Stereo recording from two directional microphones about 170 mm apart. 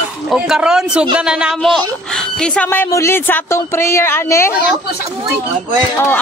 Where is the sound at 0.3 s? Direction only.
5° right (ahead or behind); by 4.6 s 15° left (ahead or behind).